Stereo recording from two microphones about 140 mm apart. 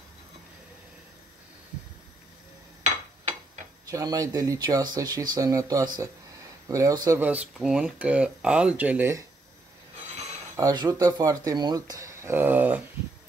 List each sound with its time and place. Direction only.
3.9 s speech: 25° right (ahead or behind)
7.2 s speech: 10° right (ahead or behind)
10.5 s speech: 30° right (ahead or behind); by 12.8 s 10° right (ahead or behind)